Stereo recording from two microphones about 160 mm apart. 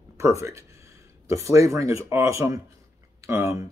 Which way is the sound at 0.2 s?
20° right (ahead or behind).